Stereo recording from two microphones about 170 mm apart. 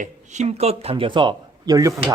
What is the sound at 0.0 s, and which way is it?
Speech, 45° right (ahead or behind).